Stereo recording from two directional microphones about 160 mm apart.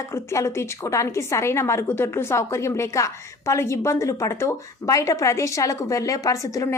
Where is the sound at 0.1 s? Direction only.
15° left (ahead or behind).